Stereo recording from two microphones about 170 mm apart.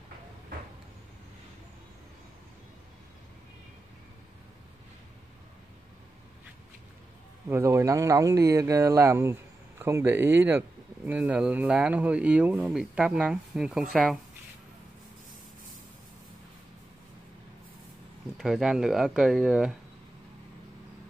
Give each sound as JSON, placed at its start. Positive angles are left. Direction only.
{"t": 7.4, "sound": "speech", "side_deg": -15}
{"t": 18.4, "sound": "speech", "side_deg": -5}